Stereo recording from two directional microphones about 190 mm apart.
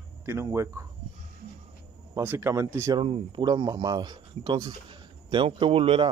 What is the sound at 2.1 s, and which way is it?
Speech, 10° right (ahead or behind).